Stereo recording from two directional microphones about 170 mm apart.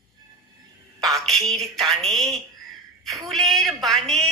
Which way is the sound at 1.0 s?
Centre (ahead or behind).